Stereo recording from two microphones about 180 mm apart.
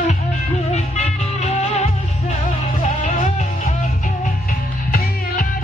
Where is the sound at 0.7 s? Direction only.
40° left (ahead or behind).